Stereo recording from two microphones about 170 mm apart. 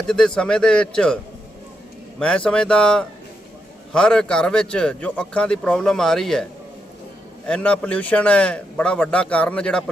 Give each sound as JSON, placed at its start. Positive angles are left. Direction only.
{"t": 0.1, "sound": "speech", "side_deg": 5}
{"t": 7.4, "sound": "a man's voice", "side_deg": 5}